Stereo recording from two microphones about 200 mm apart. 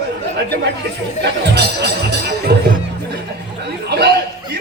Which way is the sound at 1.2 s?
55° right (ahead or behind).